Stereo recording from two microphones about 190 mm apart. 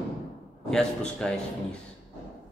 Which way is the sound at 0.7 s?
5° left (ahead or behind).